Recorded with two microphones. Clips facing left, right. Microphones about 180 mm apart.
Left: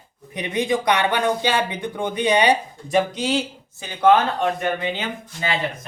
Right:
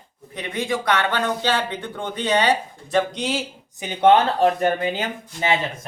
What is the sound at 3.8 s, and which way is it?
Speech, 20° right (ahead or behind).